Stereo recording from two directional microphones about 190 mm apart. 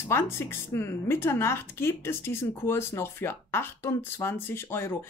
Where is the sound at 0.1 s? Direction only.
15° left (ahead or behind).